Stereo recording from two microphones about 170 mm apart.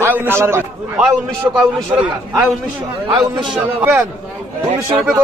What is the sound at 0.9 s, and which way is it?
A man's voice, centre (ahead or behind).